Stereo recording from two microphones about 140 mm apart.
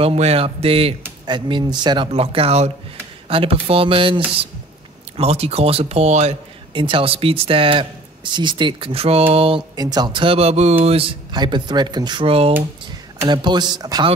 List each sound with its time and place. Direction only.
0.0 s speech: 45° right (ahead or behind)
1.2 s speech: 35° right (ahead or behind)
2.1 s speech: 45° right (ahead or behind)
6.7 s speech: 35° right (ahead or behind)
9.8 s speech: 30° right (ahead or behind); by 10.8 s 50° right (ahead or behind)
10.9 s speech: 40° right (ahead or behind)
13.2 s speech: 30° right (ahead or behind)